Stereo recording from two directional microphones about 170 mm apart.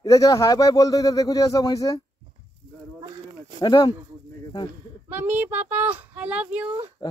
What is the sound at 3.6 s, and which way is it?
Speech, 25° left (ahead or behind).